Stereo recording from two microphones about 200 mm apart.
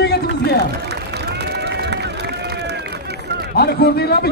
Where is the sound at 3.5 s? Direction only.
50° left (ahead or behind).